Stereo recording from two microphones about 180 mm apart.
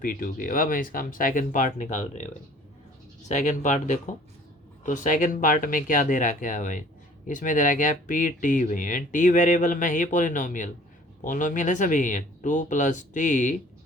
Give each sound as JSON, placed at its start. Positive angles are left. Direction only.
{"t": 0.0, "sound": "speech", "side_deg": 50}